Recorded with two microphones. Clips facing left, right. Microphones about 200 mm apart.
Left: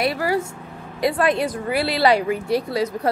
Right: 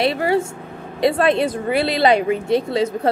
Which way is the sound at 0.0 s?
25° right (ahead or behind).